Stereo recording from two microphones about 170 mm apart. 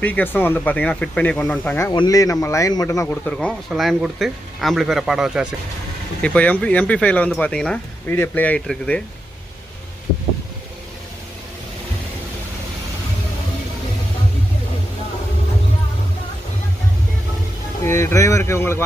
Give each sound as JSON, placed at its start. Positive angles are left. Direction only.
{"t": 0.0, "sound": "speech", "side_deg": 10}
{"t": 1.9, "sound": "speech", "side_deg": 20}
{"t": 6.2, "sound": "speech", "side_deg": 10}
{"t": 17.8, "sound": "speech", "side_deg": 15}